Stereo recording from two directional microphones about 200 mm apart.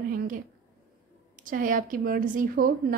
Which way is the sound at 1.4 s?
40° right (ahead or behind).